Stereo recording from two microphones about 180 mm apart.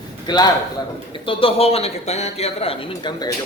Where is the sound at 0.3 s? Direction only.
25° left (ahead or behind).